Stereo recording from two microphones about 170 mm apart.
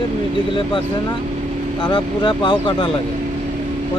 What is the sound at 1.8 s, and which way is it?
Speech, 30° left (ahead or behind).